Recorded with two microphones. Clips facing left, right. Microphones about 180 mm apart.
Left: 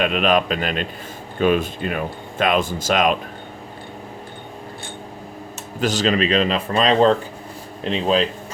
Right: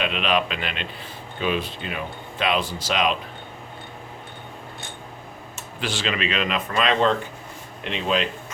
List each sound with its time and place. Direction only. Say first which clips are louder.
0.0 s speech: left 5 dB; 45° left (ahead or behind)
5.8 s a man's voice: left 8 dB; 40° left (ahead or behind)